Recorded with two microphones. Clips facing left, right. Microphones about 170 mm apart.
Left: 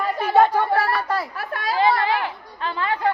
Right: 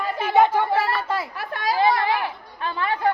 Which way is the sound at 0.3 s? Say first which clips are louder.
Left 1 dB; 20° right (ahead or behind).